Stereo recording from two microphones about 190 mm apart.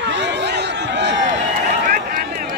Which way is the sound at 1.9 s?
50° right (ahead or behind).